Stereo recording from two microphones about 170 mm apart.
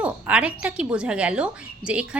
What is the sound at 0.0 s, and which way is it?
A woman's voice, 5° right (ahead or behind).